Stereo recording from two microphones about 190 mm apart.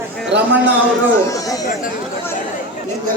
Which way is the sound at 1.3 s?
20° left (ahead or behind).